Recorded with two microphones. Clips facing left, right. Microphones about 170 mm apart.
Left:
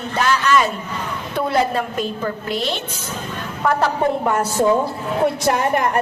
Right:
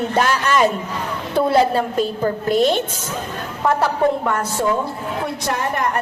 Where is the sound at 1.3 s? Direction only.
30° right (ahead or behind); by 2.8 s 45° right (ahead or behind).